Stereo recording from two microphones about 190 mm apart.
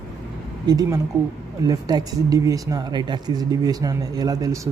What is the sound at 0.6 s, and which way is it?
Speech, 20° right (ahead or behind).